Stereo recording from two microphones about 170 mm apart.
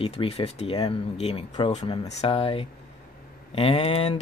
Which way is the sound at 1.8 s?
25° left (ahead or behind).